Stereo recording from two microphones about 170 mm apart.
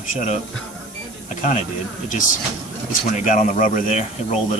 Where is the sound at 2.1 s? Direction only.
50° left (ahead or behind).